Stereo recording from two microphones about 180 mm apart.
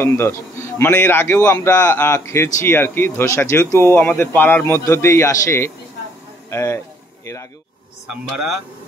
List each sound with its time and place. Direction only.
0.0 s a man's voice: 15° left (ahead or behind)
8.1 s speech: 5° right (ahead or behind)